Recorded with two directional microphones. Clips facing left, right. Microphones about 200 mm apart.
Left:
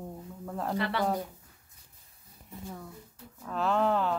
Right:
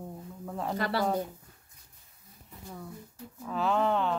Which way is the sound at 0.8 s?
35° right (ahead or behind).